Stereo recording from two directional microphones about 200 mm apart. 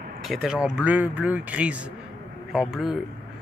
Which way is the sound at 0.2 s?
Centre (ahead or behind).